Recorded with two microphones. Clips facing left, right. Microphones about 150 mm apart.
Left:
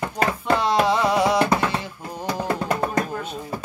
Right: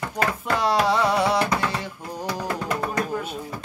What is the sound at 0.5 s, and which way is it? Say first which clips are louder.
Music: even; centre (ahead or behind).